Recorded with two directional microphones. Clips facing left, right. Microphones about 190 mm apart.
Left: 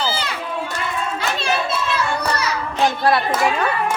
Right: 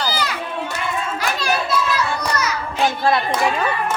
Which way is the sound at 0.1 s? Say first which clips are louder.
Right 1 dB; 25° left (ahead or behind).